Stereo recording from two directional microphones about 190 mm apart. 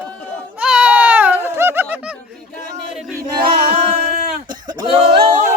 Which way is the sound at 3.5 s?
55° right (ahead or behind).